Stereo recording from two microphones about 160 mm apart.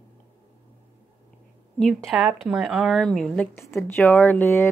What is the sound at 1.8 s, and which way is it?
Speech, 5° left (ahead or behind).